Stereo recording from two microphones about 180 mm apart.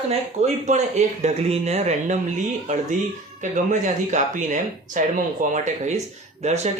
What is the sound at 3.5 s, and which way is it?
Speech, 45° right (ahead or behind).